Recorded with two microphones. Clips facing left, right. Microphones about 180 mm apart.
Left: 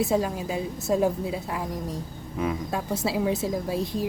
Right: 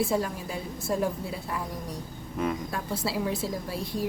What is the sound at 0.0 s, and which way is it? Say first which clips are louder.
Speech: left 3 dB; 20° left (ahead or behind).